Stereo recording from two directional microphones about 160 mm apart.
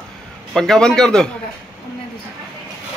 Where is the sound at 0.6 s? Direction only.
5° left (ahead or behind).